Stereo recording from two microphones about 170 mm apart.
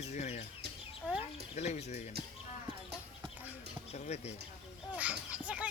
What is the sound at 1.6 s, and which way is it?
Speech, 40° left (ahead or behind).